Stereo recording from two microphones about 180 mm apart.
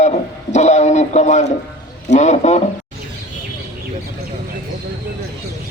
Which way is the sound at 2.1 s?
40° left (ahead or behind).